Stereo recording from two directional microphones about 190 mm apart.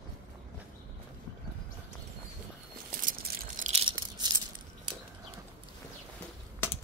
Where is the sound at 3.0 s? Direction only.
45° right (ahead or behind).